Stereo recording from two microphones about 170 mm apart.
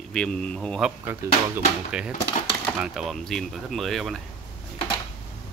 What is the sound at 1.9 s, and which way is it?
Speech, 5° right (ahead or behind).